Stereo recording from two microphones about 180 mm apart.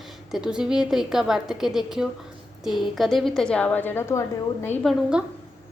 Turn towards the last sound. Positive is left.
turn(degrees=0)  # may be behind; listen again after turning